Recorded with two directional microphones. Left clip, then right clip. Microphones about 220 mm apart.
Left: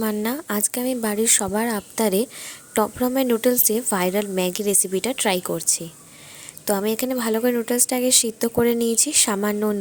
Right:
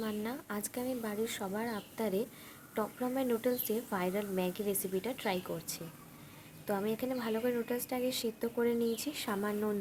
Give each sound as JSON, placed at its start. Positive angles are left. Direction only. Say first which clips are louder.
{"t": 0.0, "sound": "speech", "louder": "left 14 dB", "side_deg": 45}